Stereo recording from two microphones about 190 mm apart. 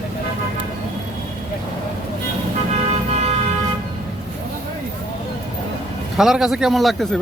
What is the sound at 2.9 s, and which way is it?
Music, 35° right (ahead or behind).